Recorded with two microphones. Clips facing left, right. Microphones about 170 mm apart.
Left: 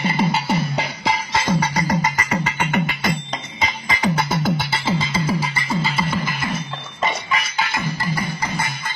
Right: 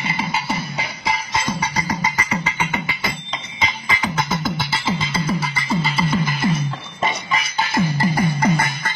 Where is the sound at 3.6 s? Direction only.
35° left (ahead or behind).